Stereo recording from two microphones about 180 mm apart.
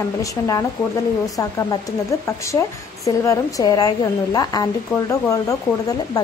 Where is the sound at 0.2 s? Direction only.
20° left (ahead or behind).